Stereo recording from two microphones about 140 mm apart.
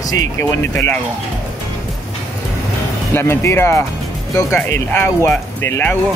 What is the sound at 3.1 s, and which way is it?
Speech, 20° left (ahead or behind).